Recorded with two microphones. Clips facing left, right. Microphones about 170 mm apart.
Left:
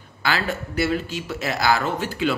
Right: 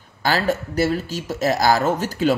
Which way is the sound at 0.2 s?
40° right (ahead or behind).